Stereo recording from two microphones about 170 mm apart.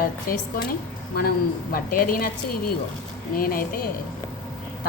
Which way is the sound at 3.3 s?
60° left (ahead or behind).